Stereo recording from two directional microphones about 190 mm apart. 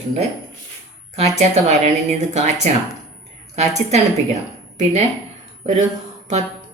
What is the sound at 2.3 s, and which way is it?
A woman's voice, 35° right (ahead or behind).